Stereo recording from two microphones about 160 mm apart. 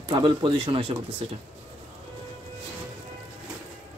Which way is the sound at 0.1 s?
30° right (ahead or behind).